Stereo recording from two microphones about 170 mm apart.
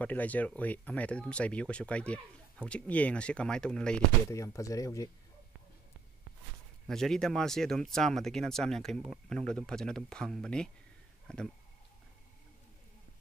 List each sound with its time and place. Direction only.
0.0 s speech: 10° left (ahead or behind)
4.3 s speech: 20° left (ahead or behind)
6.9 s speech: 5° left (ahead or behind)